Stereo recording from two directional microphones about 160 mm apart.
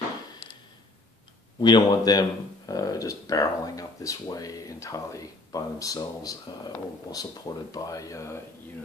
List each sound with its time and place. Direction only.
1.6 s speech: 25° left (ahead or behind)